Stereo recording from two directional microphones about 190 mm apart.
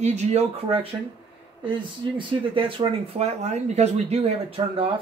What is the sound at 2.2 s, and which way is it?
A woman's voice, 25° right (ahead or behind).